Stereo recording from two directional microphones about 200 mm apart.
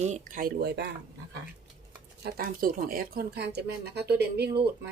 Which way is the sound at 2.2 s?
50° right (ahead or behind).